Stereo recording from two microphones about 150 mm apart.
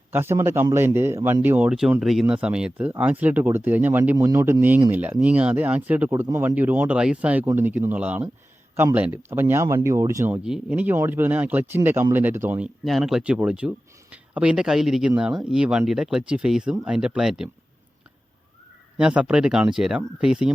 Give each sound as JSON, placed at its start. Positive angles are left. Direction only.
{"t": 0.1, "sound": "speech", "side_deg": -15}
{"t": 10.4, "sound": "speech", "side_deg": -5}
{"t": 18.9, "sound": "speech", "side_deg": -5}